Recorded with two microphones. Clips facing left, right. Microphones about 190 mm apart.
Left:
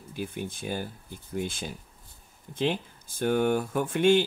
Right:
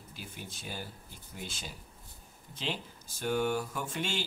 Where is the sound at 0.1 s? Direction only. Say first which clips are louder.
Left 13 dB; 55° left (ahead or behind).